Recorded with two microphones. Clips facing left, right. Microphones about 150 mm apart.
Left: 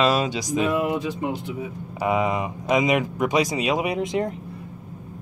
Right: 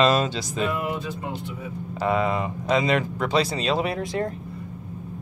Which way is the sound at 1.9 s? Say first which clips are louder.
Left 1 dB; 15° left (ahead or behind).